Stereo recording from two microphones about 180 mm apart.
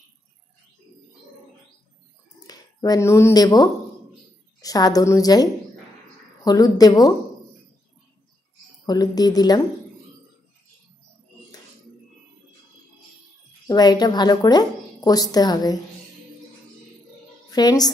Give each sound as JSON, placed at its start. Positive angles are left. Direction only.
{"t": 2.4, "sound": "a woman's voice", "side_deg": 20}
{"t": 8.8, "sound": "a woman's voice", "side_deg": 20}
{"t": 13.7, "sound": "a woman's voice", "side_deg": 20}
{"t": 17.5, "sound": "a woman's voice", "side_deg": 20}